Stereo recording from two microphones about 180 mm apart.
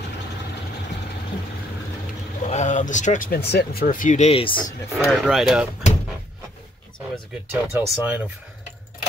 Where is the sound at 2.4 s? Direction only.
40° left (ahead or behind).